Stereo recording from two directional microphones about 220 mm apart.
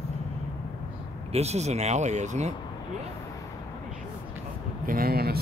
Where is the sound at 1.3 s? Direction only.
30° right (ahead or behind).